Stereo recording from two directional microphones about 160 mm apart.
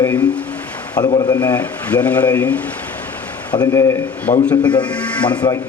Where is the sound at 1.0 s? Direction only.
25° left (ahead or behind).